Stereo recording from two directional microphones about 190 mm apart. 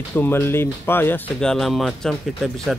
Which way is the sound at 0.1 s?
10° left (ahead or behind).